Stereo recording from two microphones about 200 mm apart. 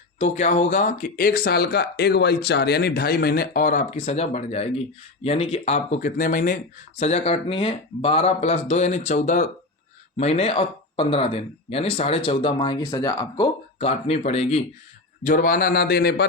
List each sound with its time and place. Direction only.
0.2 s speech: 35° left (ahead or behind)
7.0 s speech: 30° left (ahead or behind); by 16.2 s 55° left (ahead or behind)